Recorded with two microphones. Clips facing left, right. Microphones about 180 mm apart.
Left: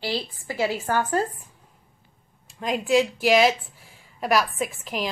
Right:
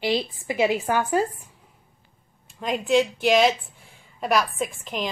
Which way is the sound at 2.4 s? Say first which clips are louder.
Even; centre (ahead or behind).